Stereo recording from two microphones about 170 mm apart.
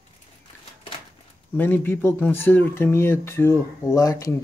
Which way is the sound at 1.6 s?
10° left (ahead or behind).